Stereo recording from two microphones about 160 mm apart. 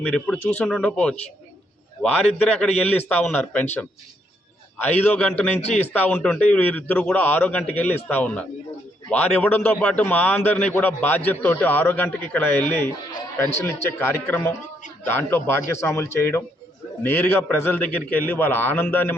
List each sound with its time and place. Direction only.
0.0 s a man's voice: 5° left (ahead or behind)
4.8 s a man's voice: 10° left (ahead or behind)